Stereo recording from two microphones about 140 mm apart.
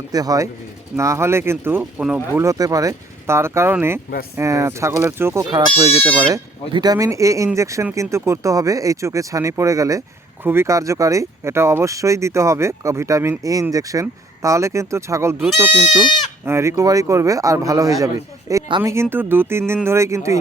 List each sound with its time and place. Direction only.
0.1 s speech: 25° right (ahead or behind)
1.8 s speech: 5° right (ahead or behind)
2.3 s speech: 20° right (ahead or behind)
5.5 s speech: 30° right (ahead or behind)